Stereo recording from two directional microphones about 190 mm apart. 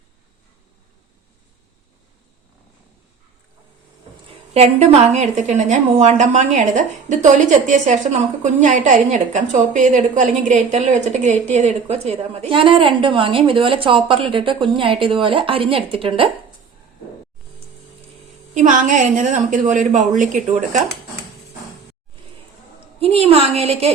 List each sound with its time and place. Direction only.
4.5 s a woman's voice: 30° right (ahead or behind)
18.5 s a woman's voice: 40° right (ahead or behind)
23.0 s a woman's voice: 30° right (ahead or behind)